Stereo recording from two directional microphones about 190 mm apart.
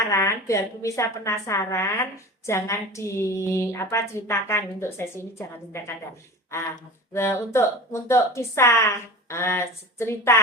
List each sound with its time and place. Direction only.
0.1 s a woman's voice: 15° left (ahead or behind)